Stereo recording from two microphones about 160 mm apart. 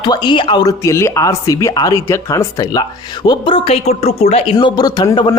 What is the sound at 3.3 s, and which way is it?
Speech, 35° left (ahead or behind).